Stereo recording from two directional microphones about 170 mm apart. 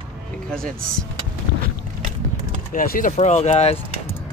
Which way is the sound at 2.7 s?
55° left (ahead or behind).